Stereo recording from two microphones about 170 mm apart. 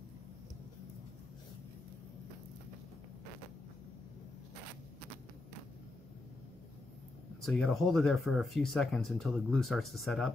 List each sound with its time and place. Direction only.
7.4 s speech: centre (ahead or behind)